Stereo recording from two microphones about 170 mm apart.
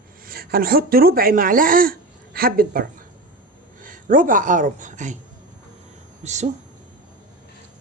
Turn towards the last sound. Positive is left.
turn(degrees=-45)  # may be behind; listen again after turning